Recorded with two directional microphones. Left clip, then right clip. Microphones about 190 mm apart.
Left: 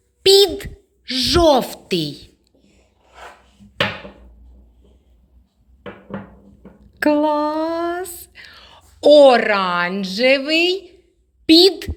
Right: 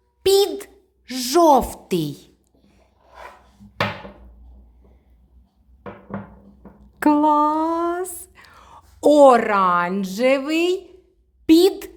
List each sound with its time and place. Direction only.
0.2 s a child's voice: 10° right (ahead or behind)
6.7 s a sound: 20° right (ahead or behind)
9.9 s a woman's voice: 15° right (ahead or behind)